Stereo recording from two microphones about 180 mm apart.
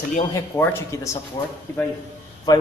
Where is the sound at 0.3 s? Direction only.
15° left (ahead or behind).